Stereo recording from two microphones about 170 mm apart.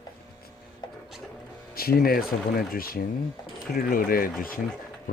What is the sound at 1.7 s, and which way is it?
Speech, 60° left (ahead or behind).